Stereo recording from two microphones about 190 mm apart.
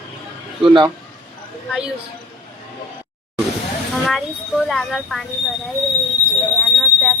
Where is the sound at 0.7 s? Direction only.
20° right (ahead or behind).